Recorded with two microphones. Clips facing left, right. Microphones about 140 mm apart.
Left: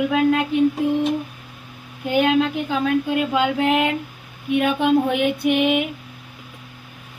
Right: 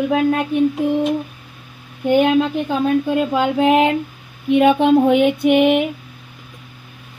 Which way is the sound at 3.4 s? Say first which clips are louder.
Right 6 dB; 55° right (ahead or behind).